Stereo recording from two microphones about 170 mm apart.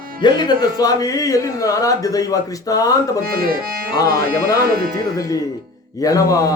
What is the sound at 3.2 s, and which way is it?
Music, 60° right (ahead or behind).